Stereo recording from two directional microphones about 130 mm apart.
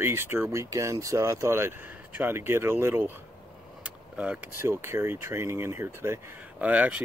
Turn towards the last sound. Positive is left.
turn(degrees=-10)  # may be behind; listen again after turning